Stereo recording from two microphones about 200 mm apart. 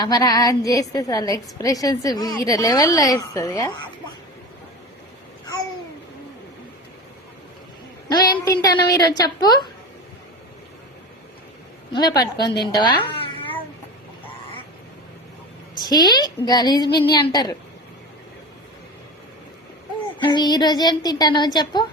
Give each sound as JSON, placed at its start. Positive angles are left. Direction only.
{"t": 0.0, "sound": "a woman's voice", "side_deg": 20}
{"t": 8.0, "sound": "a sound", "side_deg": 20}
{"t": 8.6, "sound": "a woman's voice", "side_deg": 20}
{"t": 11.9, "sound": "a woman's voice", "side_deg": 20}
{"t": 15.8, "sound": "a woman's voice", "side_deg": 20}
{"t": 20.1, "sound": "a woman's voice", "side_deg": 20}